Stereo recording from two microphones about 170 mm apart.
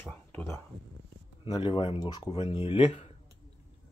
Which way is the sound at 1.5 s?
30° left (ahead or behind).